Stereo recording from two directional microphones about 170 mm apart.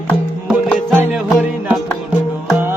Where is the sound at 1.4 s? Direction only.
10° right (ahead or behind).